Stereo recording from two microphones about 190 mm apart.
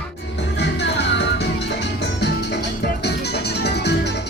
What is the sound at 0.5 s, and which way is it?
Music, 65° left (ahead or behind).